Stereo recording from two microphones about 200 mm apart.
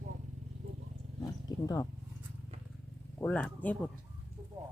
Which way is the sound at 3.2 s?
10° left (ahead or behind).